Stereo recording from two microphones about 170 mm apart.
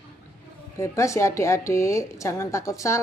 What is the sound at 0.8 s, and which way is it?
A woman's voice, 15° left (ahead or behind).